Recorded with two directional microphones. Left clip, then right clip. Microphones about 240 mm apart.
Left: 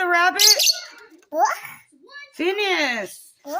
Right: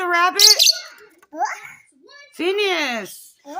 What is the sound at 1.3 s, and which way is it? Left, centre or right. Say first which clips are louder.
Speech: left 4 dB; left.